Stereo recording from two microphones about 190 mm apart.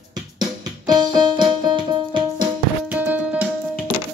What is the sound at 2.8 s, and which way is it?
Music, 10° right (ahead or behind).